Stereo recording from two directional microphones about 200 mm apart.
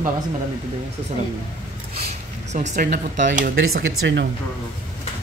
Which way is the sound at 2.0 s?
35° right (ahead or behind).